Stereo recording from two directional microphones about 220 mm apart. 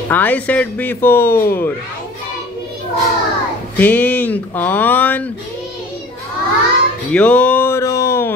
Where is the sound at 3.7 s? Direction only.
10° left (ahead or behind).